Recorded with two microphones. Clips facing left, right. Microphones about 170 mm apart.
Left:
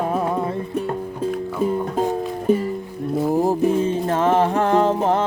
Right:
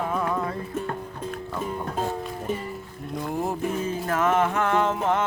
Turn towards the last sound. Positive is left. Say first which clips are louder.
# left 6 dB
turn(degrees=35)  # may be behind; listen again after turning